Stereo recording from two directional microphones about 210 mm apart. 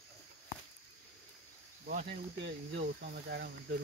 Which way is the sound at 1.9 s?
45° right (ahead or behind).